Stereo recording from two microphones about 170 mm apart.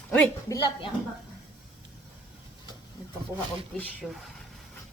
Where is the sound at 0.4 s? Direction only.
20° left (ahead or behind).